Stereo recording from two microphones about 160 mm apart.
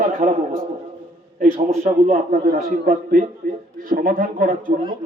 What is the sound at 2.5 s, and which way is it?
A man's voice, 70° right (ahead or behind).